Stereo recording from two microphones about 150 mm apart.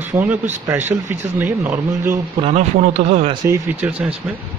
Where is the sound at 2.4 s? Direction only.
50° right (ahead or behind).